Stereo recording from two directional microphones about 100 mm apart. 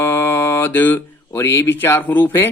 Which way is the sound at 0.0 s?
25° left (ahead or behind).